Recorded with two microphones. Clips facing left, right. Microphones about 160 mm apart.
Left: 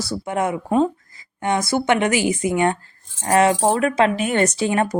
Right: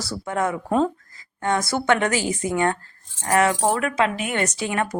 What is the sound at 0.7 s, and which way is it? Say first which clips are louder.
Speech: left 2 dB; 5° left (ahead or behind).